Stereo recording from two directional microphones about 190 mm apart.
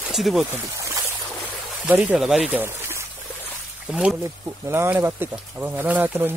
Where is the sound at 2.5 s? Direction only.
10° right (ahead or behind).